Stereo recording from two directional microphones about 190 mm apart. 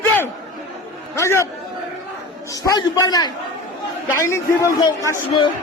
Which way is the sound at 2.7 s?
20° left (ahead or behind).